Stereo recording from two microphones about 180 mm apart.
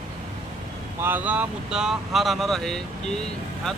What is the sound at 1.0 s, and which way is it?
Speech, 10° right (ahead or behind).